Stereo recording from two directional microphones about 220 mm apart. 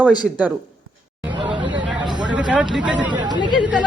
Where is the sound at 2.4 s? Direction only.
5° right (ahead or behind).